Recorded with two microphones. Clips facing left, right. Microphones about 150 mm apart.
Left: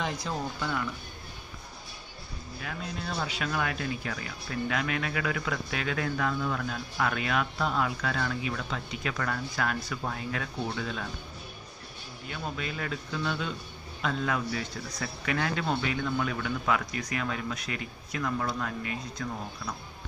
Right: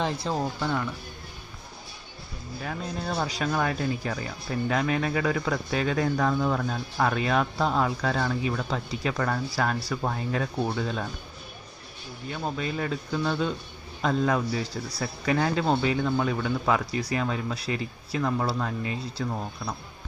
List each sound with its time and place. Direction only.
0.0 s speech: 30° right (ahead or behind)
2.6 s speech: 40° right (ahead or behind)
12.3 s speech: 35° right (ahead or behind)